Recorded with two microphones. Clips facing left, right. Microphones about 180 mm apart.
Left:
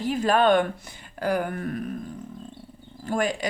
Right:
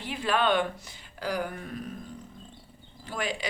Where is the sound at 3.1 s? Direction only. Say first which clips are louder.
Left 7 dB; 45° left (ahead or behind).